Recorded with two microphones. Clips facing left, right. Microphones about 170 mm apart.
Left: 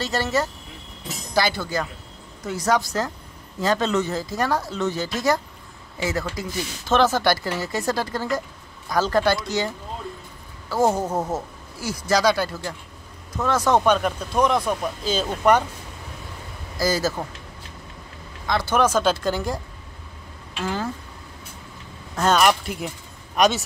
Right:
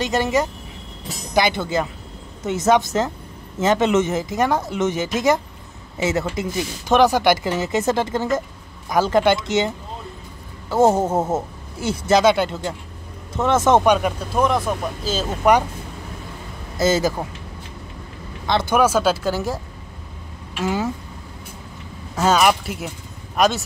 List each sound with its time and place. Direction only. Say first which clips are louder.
0.0 s speech: right 4 dB; 15° right (ahead or behind)
13.9 s speech: right 1 dB; 5° right (ahead or behind)
16.7 s speech: right 4 dB; 25° right (ahead or behind)
18.7 s speech: right 2 dB; 10° right (ahead or behind)
22.1 s speech: right 2 dB; 5° right (ahead or behind)